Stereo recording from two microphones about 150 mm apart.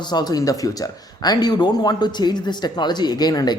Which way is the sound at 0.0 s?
25° left (ahead or behind).